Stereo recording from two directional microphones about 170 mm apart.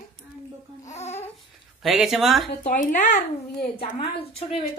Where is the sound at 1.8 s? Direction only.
Centre (ahead or behind).